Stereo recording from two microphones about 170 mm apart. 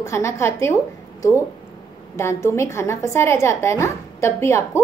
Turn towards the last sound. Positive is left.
turn(degrees=15)  # may be behind; listen again after turning